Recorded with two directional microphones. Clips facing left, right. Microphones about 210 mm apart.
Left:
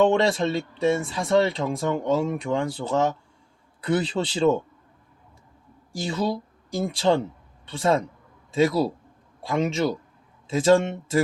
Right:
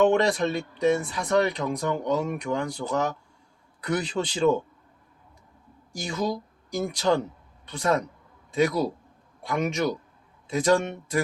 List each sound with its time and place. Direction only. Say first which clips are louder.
0.0 s speech: left 1 dB; 30° left (ahead or behind)
5.9 s speech: left 2 dB; 30° left (ahead or behind)